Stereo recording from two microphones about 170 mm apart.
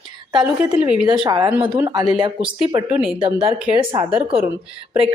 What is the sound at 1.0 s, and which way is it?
Speech, 30° right (ahead or behind).